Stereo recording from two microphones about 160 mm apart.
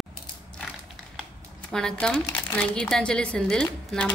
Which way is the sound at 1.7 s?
5° left (ahead or behind).